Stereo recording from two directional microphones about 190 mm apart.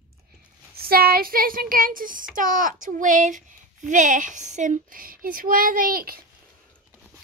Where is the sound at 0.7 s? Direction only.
50° right (ahead or behind).